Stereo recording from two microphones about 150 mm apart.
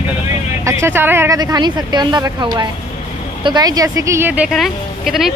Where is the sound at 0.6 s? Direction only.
20° right (ahead or behind).